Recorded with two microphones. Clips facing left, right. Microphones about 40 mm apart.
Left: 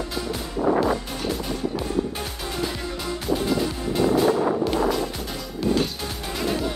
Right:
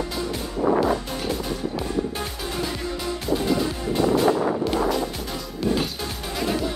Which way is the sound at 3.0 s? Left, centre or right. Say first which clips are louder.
Even; centre.